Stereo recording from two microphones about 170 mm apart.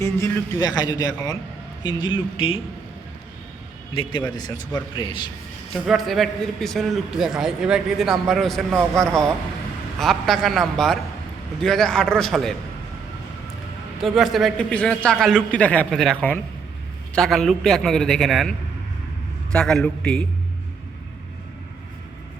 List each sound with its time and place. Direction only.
0.0 s a man's voice: 20° left (ahead or behind)
3.9 s a man's voice: 30° left (ahead or behind)
5.7 s a man's voice: centre (ahead or behind)
14.0 s a man's voice: centre (ahead or behind)
19.5 s a man's voice: 5° left (ahead or behind)